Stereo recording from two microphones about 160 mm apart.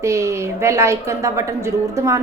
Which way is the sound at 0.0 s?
20° right (ahead or behind).